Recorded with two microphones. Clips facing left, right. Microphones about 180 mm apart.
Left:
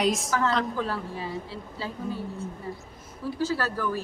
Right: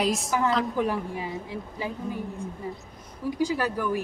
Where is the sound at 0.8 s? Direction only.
15° right (ahead or behind).